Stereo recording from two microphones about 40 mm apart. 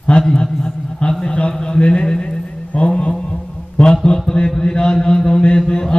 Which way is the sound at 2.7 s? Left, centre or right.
Left.